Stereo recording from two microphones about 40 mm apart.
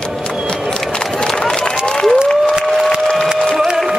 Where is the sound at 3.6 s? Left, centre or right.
Centre.